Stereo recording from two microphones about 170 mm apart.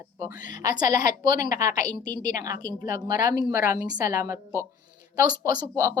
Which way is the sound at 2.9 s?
20° right (ahead or behind).